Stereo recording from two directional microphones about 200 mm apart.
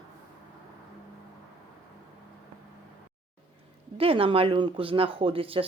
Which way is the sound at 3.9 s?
30° right (ahead or behind).